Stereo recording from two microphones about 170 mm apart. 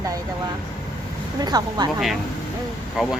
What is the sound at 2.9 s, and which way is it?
Speech, centre (ahead or behind).